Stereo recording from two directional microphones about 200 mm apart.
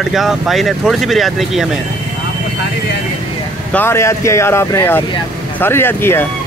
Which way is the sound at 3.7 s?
10° left (ahead or behind).